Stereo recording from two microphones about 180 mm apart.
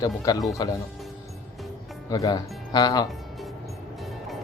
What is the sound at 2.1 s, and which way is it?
Speech, 20° left (ahead or behind).